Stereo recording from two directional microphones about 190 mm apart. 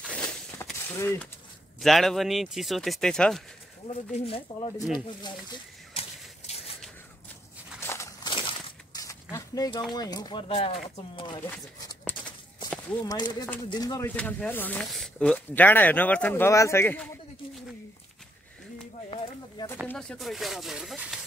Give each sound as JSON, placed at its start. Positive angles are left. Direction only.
{"t": 0.0, "sound": "a sound", "side_deg": 5}
{"t": 1.8, "sound": "speech", "side_deg": 0}
{"t": 3.8, "sound": "speech", "side_deg": 30}
{"t": 6.4, "sound": "scissors", "side_deg": 30}
{"t": 7.8, "sound": "crumpling", "side_deg": 15}
{"t": 9.9, "sound": "speech", "side_deg": 20}
{"t": 13.0, "sound": "speech", "side_deg": 20}
{"t": 14.1, "sound": "speech", "side_deg": 5}
{"t": 19.9, "sound": "speech", "side_deg": 5}